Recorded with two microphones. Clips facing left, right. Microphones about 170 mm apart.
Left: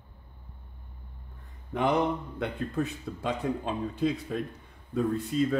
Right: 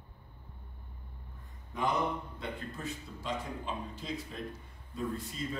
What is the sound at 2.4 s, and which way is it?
Speech, 65° left (ahead or behind).